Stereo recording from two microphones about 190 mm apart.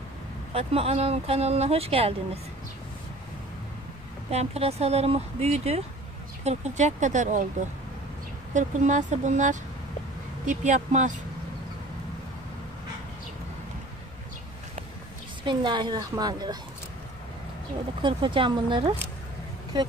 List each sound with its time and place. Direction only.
0.5 s speech: 30° right (ahead or behind)
4.3 s speech: 35° right (ahead or behind)
8.5 s speech: 40° right (ahead or behind)
15.4 s a woman's voice: 25° right (ahead or behind)
18.0 s a woman's voice: 25° right (ahead or behind)